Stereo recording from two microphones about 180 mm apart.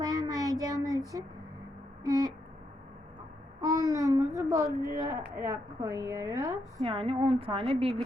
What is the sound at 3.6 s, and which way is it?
A child's voice, 20° right (ahead or behind).